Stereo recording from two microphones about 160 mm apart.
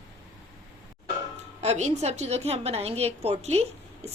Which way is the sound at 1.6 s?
45° right (ahead or behind).